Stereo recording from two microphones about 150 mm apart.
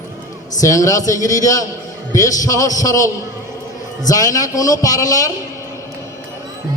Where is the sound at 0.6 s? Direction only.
20° left (ahead or behind).